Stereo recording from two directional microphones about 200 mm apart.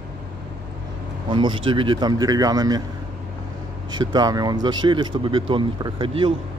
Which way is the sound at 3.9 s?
20° right (ahead or behind).